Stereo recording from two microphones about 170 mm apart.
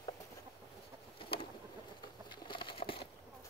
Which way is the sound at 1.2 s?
30° left (ahead or behind).